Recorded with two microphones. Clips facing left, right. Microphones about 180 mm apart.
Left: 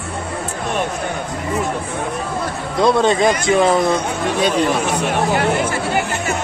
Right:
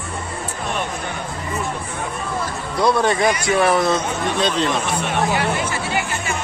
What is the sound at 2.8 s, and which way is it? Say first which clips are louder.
Speech: left 3 dB; 20° left (ahead or behind).